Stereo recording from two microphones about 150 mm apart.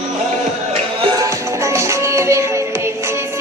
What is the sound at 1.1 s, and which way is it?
Music, 20° right (ahead or behind).